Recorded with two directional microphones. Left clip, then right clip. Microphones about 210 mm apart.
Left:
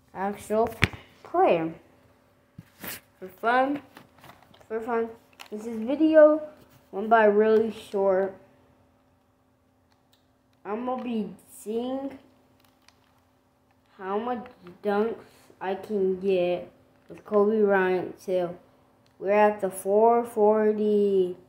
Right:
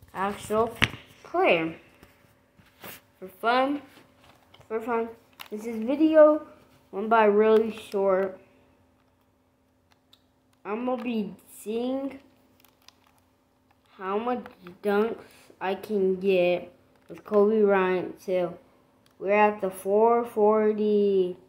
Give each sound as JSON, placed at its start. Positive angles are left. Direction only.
{"t": 0.5, "sound": "speech", "side_deg": 15}
{"t": 3.2, "sound": "a woman's voice", "side_deg": 0}
{"t": 10.6, "sound": "speech", "side_deg": 0}
{"t": 13.9, "sound": "a woman's voice", "side_deg": 0}